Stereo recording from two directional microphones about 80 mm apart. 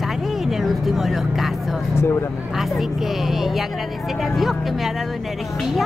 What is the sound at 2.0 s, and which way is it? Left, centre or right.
Speech, left.